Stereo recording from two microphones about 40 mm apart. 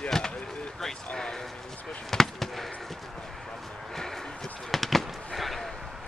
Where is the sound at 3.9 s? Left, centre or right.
Centre.